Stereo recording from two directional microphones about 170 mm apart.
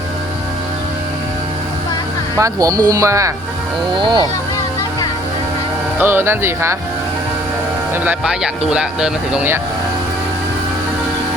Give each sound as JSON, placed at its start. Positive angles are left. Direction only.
{"t": 2.4, "sound": "speech", "side_deg": -20}
{"t": 6.0, "sound": "speech", "side_deg": -15}
{"t": 8.0, "sound": "speech", "side_deg": -5}